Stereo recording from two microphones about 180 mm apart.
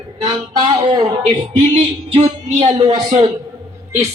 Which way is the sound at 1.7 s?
35° right (ahead or behind).